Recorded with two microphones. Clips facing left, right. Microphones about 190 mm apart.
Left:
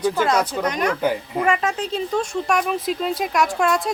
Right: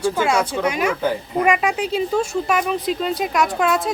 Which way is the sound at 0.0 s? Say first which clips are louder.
Even; 10° right (ahead or behind).